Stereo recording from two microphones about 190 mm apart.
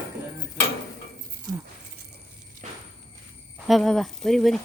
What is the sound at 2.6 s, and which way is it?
Walk, 40° right (ahead or behind).